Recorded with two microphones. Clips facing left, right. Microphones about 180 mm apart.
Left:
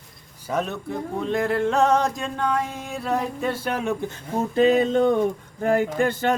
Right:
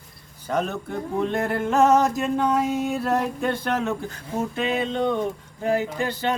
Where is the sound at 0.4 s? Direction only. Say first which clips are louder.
Right 1 dB; centre (ahead or behind).